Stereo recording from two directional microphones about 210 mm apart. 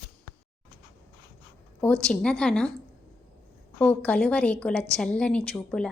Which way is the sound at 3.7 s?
5° left (ahead or behind).